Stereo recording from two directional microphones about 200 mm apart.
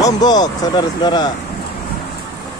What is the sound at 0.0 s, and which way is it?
Speech, 20° left (ahead or behind).